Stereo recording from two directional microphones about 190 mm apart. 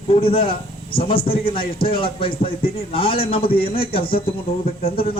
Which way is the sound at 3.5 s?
55° left (ahead or behind).